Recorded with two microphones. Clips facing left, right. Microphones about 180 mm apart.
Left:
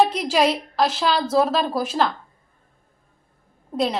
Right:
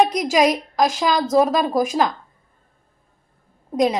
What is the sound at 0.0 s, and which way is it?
A woman's voice, 15° right (ahead or behind).